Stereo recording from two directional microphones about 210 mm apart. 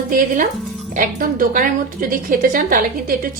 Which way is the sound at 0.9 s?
40° right (ahead or behind).